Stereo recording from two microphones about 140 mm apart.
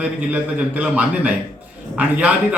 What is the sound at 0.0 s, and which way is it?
Speech, 10° right (ahead or behind).